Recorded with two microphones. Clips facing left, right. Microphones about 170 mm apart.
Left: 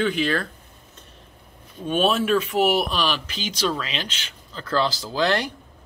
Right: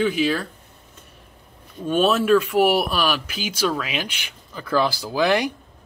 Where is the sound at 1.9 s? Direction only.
10° left (ahead or behind).